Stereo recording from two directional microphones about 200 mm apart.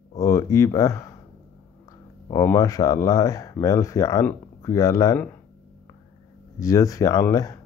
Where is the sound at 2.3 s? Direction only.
15° left (ahead or behind).